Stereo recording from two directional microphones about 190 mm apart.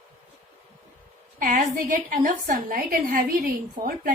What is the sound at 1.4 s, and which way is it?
A woman's voice, 40° right (ahead or behind).